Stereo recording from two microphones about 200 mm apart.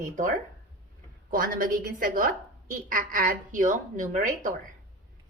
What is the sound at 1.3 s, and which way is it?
A woman's voice, 45° right (ahead or behind).